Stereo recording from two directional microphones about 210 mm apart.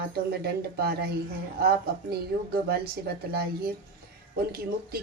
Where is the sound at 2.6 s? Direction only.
50° right (ahead or behind).